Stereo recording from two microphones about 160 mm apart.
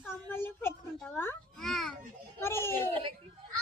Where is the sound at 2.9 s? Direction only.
35° right (ahead or behind).